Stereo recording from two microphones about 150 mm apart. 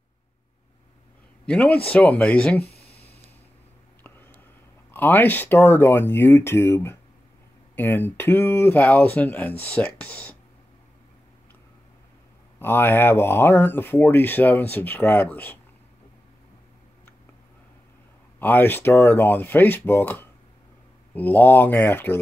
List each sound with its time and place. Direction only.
1.4 s a man's voice: 10° left (ahead or behind)
2.7 s a sound: 90° left
4.9 s speech: 15° left (ahead or behind)
12.5 s speech: 15° left (ahead or behind)
18.4 s speech: 15° left (ahead or behind)